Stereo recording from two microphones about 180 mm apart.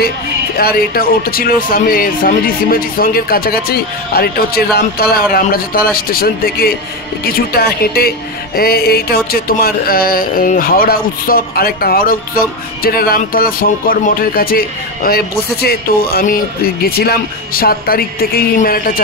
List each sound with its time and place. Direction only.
0.6 s speech: 55° left (ahead or behind)